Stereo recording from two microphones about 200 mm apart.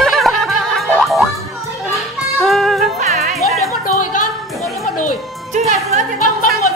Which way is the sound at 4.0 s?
40° left (ahead or behind).